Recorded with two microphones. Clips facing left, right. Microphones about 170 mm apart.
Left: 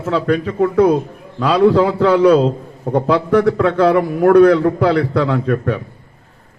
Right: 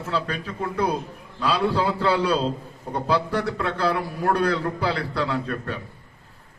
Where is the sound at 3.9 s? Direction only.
75° left (ahead or behind).